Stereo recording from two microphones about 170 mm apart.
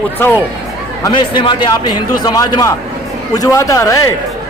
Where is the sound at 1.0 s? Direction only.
25° left (ahead or behind).